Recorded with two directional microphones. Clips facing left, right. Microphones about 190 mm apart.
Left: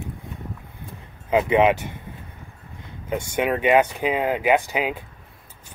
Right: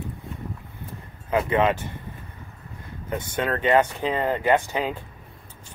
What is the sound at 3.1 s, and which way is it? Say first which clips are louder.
Speech: left 3 dB; 15° left (ahead or behind).